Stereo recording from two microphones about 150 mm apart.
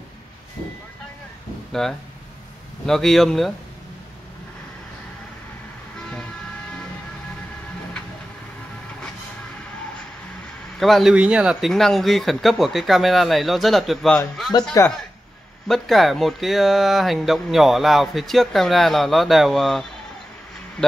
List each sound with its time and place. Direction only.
1.7 s speech: 5° left (ahead or behind)
10.8 s speech: centre (ahead or behind)
14.8 s speech: 20° left (ahead or behind)
15.7 s speech: centre (ahead or behind)